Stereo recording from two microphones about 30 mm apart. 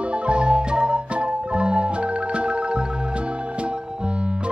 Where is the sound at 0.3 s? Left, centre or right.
Right.